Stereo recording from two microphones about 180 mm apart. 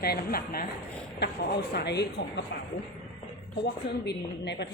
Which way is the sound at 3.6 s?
70° left (ahead or behind).